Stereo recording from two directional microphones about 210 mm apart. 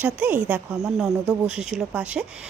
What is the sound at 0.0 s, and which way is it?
Speech, 10° right (ahead or behind).